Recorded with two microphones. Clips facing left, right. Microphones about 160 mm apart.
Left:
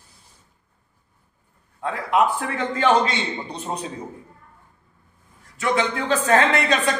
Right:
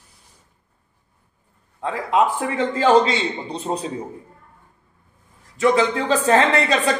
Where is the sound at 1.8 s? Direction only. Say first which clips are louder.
Right 1 dB; 30° right (ahead or behind).